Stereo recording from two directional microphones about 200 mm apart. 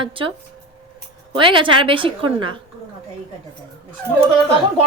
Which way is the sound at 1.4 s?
25° right (ahead or behind).